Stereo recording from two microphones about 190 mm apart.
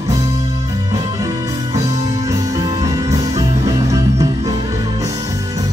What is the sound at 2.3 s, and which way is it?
Music, 20° right (ahead or behind).